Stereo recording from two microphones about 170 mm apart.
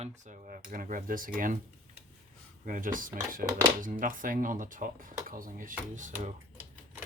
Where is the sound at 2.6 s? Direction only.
50° right (ahead or behind).